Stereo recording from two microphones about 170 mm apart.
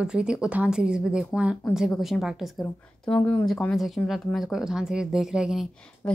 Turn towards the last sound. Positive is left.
turn(degrees=-5)  # may be behind; listen again after turning